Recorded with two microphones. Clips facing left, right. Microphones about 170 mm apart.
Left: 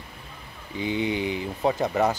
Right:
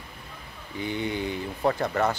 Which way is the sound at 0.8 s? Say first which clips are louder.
Left 3 dB; 15° left (ahead or behind).